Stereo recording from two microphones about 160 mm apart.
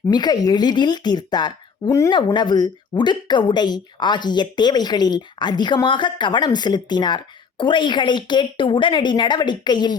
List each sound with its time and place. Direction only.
0.1 s speech: 25° left (ahead or behind)